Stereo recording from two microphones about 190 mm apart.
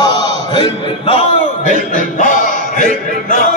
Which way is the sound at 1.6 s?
40° left (ahead or behind).